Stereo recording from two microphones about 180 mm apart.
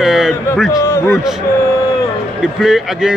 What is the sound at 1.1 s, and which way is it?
Speech, 5° right (ahead or behind).